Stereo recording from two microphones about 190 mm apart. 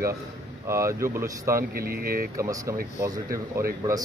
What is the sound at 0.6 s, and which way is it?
Speech, 15° right (ahead or behind).